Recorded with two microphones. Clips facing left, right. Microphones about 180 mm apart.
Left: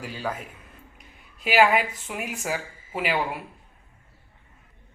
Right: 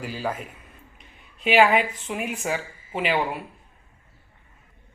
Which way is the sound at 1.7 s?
5° left (ahead or behind).